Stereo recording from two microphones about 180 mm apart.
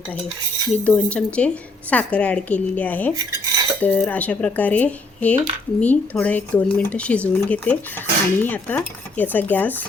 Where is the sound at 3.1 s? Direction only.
15° right (ahead or behind).